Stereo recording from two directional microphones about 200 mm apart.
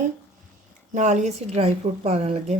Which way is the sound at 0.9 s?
35° right (ahead or behind).